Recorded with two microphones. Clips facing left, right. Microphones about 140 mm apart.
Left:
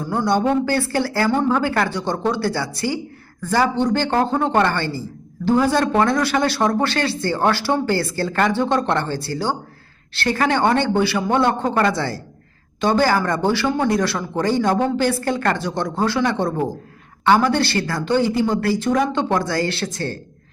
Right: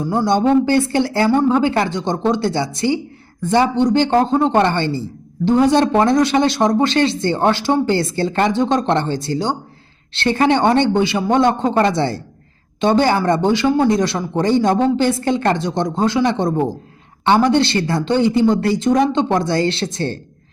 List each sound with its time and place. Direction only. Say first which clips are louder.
0.0 s speech: right 3 dB; 15° right (ahead or behind)